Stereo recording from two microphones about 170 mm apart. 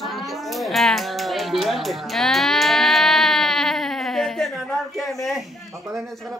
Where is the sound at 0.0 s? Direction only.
Centre (ahead or behind).